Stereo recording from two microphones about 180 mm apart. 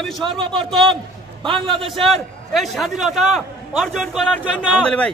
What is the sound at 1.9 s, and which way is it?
A man's voice, centre (ahead or behind).